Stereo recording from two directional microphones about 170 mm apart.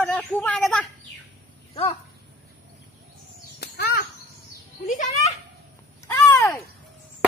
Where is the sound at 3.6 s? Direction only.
70° left (ahead or behind).